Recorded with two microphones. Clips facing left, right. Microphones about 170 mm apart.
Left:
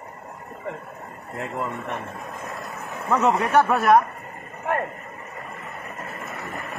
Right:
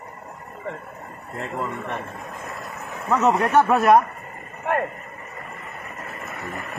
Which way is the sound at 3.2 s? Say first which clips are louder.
Right 1 dB; 5° right (ahead or behind).